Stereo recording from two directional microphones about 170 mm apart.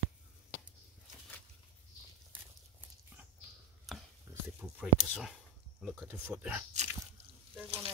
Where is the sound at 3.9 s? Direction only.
Centre (ahead or behind).